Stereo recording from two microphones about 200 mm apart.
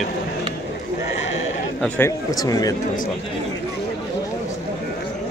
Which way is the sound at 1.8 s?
10° left (ahead or behind).